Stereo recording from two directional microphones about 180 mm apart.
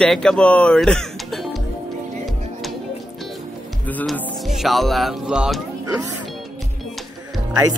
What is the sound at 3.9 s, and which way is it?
Speech, centre (ahead or behind).